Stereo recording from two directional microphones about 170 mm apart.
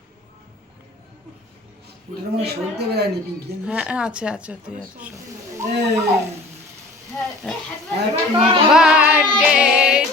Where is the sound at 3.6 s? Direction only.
5° right (ahead or behind).